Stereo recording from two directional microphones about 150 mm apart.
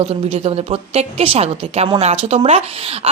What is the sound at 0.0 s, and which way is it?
A woman's voice, 45° right (ahead or behind).